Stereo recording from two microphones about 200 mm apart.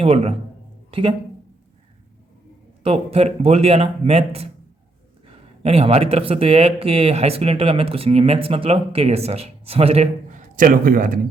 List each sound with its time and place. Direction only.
0.0 s speech: 30° right (ahead or behind)
2.8 s speech: 30° right (ahead or behind); by 11.2 s 45° right (ahead or behind)